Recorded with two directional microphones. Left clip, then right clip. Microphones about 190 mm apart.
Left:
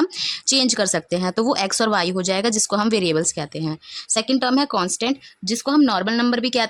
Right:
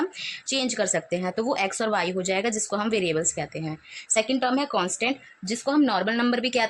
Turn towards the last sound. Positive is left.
turn(degrees=45)  # may be behind; listen again after turning